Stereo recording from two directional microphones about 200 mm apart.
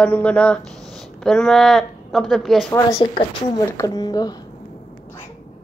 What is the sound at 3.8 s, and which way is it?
Speech, 20° left (ahead or behind).